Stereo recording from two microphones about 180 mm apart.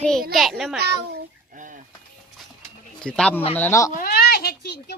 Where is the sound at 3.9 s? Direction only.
55° left (ahead or behind); by 4.9 s 70° left (ahead or behind).